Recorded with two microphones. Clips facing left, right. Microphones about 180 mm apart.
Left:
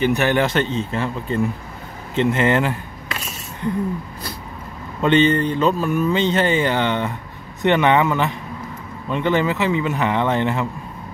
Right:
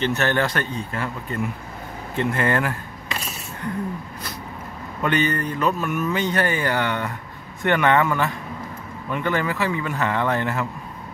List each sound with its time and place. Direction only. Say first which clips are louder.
0.0 s speech: left 4 dB; 15° left (ahead or behind)
5.0 s speech: left 6 dB; 25° left (ahead or behind)